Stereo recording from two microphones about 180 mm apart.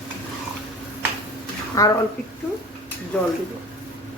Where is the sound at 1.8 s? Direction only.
20° left (ahead or behind).